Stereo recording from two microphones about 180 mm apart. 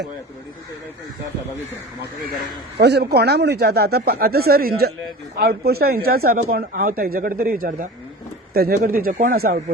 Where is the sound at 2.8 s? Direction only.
65° right (ahead or behind).